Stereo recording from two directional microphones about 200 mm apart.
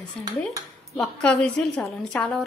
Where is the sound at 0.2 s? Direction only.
5° left (ahead or behind).